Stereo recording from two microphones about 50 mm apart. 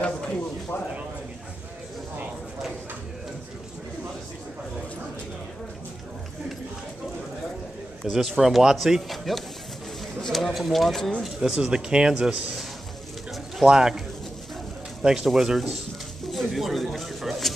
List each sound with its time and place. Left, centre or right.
8.0 s speech: centre
11.2 s speech: centre
13.7 s speech: centre
15.0 s speech: centre
16.3 s a sound: centre